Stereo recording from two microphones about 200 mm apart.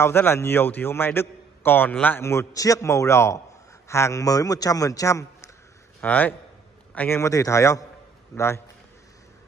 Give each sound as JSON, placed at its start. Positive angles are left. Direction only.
{"t": 0.0, "sound": "a man's voice", "side_deg": 10}